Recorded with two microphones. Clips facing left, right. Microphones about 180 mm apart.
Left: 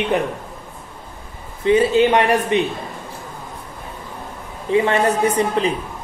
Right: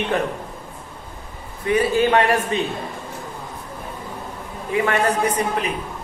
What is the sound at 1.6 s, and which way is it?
Speech, 20° left (ahead or behind).